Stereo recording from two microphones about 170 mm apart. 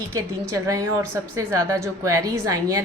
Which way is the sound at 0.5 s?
20° right (ahead or behind).